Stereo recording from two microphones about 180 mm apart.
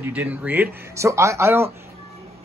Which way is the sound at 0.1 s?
10° right (ahead or behind).